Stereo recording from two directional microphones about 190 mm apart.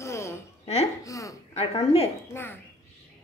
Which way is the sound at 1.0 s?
15° left (ahead or behind).